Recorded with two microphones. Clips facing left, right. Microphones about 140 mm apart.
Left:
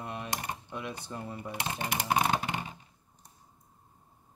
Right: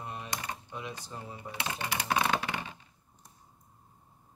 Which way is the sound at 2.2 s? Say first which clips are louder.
Left 1 dB; 20° left (ahead or behind).